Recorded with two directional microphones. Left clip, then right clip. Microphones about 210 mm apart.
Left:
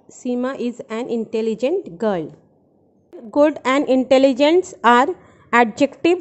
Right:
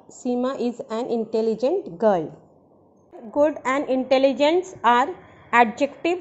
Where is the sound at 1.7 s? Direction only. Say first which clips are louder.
Right 1 dB; 25° left (ahead or behind).